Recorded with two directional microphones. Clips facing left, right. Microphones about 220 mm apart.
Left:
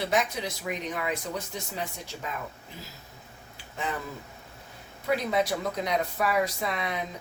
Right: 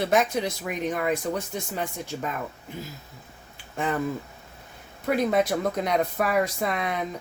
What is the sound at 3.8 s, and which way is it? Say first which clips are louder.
Speech: right 6 dB; 50° right (ahead or behind).